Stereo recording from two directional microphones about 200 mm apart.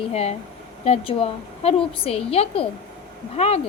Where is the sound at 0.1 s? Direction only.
30° left (ahead or behind).